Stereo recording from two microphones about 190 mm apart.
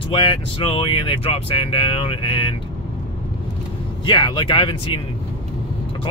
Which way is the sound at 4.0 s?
25° left (ahead or behind).